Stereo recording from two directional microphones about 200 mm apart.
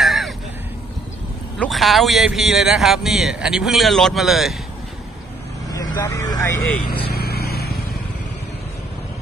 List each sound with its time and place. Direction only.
0.0 s caw: centre (ahead or behind)
1.6 s a man's voice: centre (ahead or behind)
5.7 s speech: 20° left (ahead or behind)
6.9 s vehicle: 50° left (ahead or behind)